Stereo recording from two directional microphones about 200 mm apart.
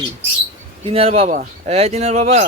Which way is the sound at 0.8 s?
30° right (ahead or behind).